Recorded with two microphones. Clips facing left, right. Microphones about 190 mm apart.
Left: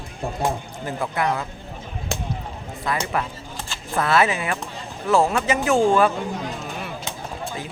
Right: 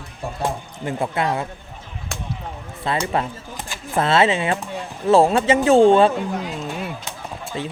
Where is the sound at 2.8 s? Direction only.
30° right (ahead or behind).